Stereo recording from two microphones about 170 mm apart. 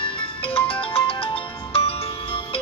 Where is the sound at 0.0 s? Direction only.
30° left (ahead or behind).